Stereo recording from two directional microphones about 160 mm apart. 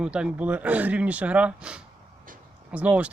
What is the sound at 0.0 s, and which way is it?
Speech, 5° right (ahead or behind).